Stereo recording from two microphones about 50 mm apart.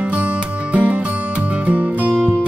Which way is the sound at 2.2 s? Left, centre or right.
Right.